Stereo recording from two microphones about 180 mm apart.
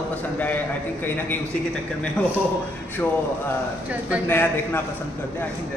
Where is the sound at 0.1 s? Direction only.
10° left (ahead or behind).